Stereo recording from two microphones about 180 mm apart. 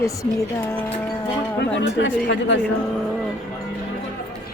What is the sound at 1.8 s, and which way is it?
Speech, 75° left (ahead or behind).